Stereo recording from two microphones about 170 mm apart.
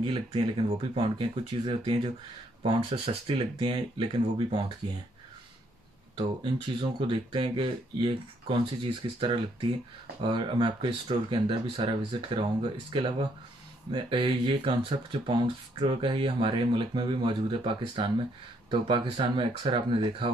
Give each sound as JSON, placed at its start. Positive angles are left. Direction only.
{"t": 0.0, "sound": "speech", "side_deg": -30}
{"t": 6.1, "sound": "speech", "side_deg": -30}